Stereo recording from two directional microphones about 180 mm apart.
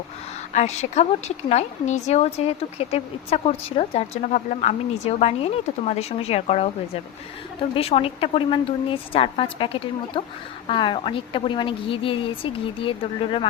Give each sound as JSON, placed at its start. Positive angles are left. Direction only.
{"t": 0.5, "sound": "a woman's voice", "side_deg": 40}
{"t": 7.8, "sound": "a woman's voice", "side_deg": 35}